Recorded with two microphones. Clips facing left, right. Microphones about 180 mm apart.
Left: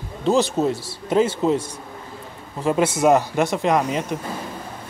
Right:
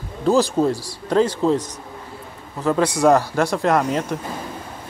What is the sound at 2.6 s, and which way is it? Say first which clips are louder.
Speech: right 1 dB; 25° left (ahead or behind).